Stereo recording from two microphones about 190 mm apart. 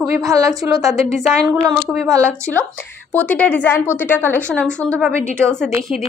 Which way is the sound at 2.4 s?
10° left (ahead or behind).